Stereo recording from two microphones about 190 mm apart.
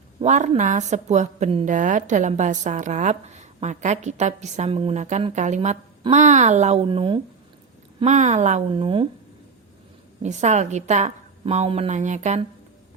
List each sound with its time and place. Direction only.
0.2 s a woman's voice: 40° right (ahead or behind)
7.9 s a woman's voice: 40° right (ahead or behind)
8.7 s speech: 30° right (ahead or behind)
10.2 s a woman's voice: 40° right (ahead or behind)